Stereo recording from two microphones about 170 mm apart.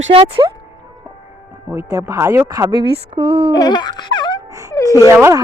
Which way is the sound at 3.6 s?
25° left (ahead or behind).